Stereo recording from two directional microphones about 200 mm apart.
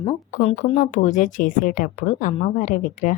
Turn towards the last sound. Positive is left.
turn(degrees=40)  # may be behind; listen again after turning